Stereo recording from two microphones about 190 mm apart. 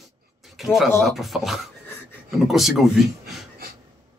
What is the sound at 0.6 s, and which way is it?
Speech, centre (ahead or behind).